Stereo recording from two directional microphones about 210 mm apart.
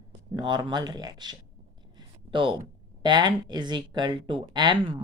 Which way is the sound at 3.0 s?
20° right (ahead or behind).